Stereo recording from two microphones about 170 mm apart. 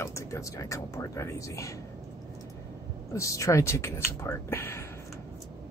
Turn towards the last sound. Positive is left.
turn(degrees=15)  # may be behind; listen again after turning